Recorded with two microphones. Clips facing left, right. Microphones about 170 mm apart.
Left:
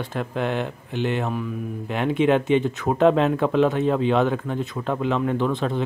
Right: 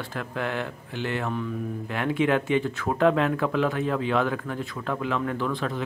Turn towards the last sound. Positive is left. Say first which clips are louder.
# left 5 dB
turn(degrees=25)  # may be behind; listen again after turning